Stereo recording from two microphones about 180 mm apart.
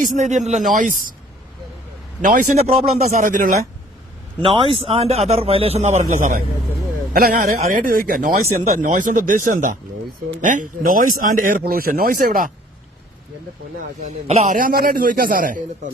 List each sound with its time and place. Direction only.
0.0 s speech: 40° right (ahead or behind)
2.2 s speech: 45° right (ahead or behind)
4.4 s a man's voice: 30° right (ahead or behind); by 12.5 s 50° right (ahead or behind)
14.0 s speech: 40° right (ahead or behind)